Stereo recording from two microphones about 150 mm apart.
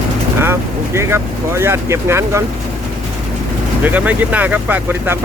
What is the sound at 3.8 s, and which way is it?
Speech, 10° right (ahead or behind).